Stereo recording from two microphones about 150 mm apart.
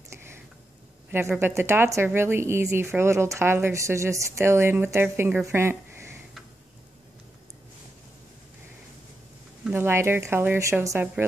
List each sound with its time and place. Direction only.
1.1 s speech: 15° right (ahead or behind)
9.7 s speech: 15° right (ahead or behind)